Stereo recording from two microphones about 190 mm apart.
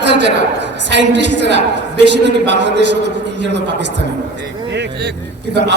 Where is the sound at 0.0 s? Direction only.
65° right (ahead or behind).